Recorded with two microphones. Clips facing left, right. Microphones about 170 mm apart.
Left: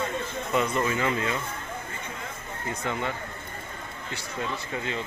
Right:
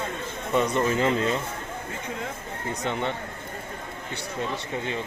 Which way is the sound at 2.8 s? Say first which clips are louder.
Right 2 dB; 25° right (ahead or behind).